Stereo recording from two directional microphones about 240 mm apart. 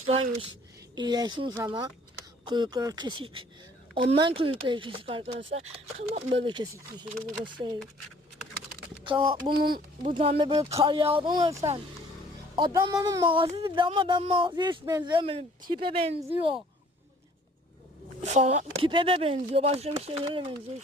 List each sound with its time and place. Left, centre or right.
0.9 s speech: centre
9.0 s speech: right
9.7 s speech: right
18.2 s speech: right